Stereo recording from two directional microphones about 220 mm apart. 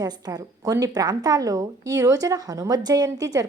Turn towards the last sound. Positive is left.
turn(degrees=-15)  # may be behind; listen again after turning